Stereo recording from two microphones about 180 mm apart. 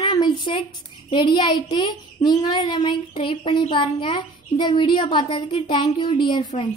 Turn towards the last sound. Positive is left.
turn(degrees=25)  # may be behind; listen again after turning